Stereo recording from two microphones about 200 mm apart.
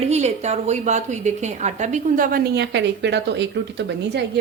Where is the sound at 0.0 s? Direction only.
35° right (ahead or behind).